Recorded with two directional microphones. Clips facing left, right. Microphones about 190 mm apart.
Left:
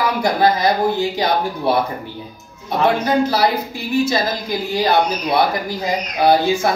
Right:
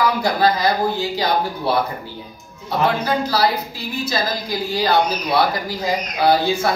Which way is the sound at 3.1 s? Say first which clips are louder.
Left 3 dB; 20° left (ahead or behind).